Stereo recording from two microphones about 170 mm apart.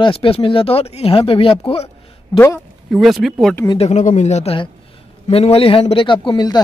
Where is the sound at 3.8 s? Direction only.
45° left (ahead or behind).